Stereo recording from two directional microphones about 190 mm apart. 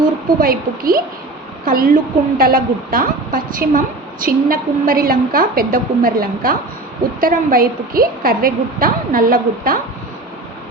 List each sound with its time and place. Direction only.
0.3 s a woman's voice: 50° right (ahead or behind)